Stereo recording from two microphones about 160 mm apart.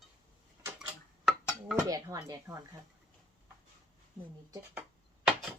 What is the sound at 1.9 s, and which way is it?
Speech, 20° right (ahead or behind).